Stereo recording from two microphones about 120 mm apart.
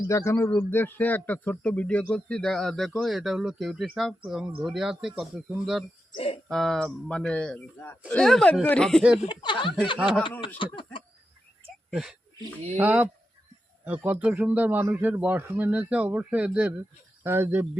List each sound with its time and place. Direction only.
0.1 s a man's voice: 25° left (ahead or behind)
0.5 s speech: 15° left (ahead or behind); by 5.4 s 5° right (ahead or behind)
6.1 s speech: 55° left (ahead or behind)
6.5 s speech: 5° left (ahead or behind)
9.3 s speech: 40° left (ahead or behind)
11.9 s speech: 5° right (ahead or behind)
12.7 s a man's voice: 15° right (ahead or behind)